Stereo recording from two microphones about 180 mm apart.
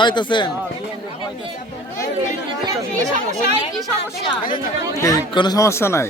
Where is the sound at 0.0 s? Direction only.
25° left (ahead or behind).